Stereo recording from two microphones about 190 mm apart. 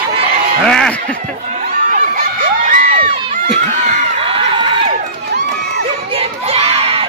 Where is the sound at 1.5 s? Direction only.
45° right (ahead or behind).